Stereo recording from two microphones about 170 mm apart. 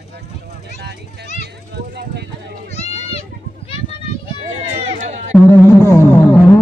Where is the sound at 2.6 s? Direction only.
40° left (ahead or behind).